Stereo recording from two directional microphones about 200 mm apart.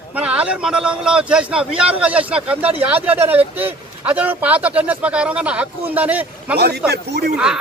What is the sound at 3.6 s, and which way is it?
Speech, 10° right (ahead or behind).